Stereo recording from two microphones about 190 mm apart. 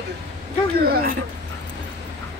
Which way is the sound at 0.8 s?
55° right (ahead or behind).